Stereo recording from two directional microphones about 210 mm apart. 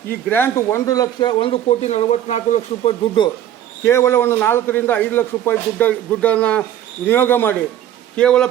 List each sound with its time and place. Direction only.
0.3 s speech: 10° left (ahead or behind); by 3.2 s 30° left (ahead or behind)
3.8 s a man's voice: 10° left (ahead or behind)